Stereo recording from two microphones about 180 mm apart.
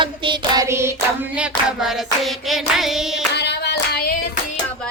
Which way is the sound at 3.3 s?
70° left (ahead or behind).